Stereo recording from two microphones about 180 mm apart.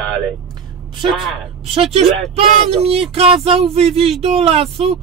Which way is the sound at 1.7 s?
35° right (ahead or behind).